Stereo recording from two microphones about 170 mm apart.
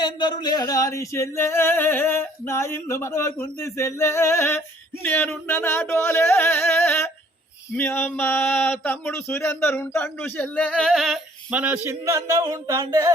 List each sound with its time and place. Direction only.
0.0 s speech: 25° left (ahead or behind); by 13.1 s 20° right (ahead or behind)